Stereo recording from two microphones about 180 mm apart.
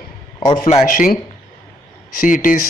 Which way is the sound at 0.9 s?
50° left (ahead or behind).